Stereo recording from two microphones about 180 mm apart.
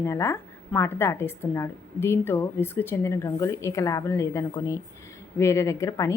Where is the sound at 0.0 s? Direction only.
15° left (ahead or behind).